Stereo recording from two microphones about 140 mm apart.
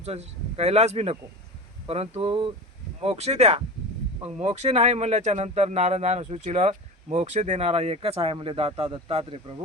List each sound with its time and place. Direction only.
0.0 s speech: 50° right (ahead or behind)